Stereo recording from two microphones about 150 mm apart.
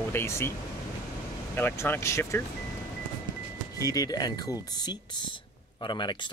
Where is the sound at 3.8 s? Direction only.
25° left (ahead or behind).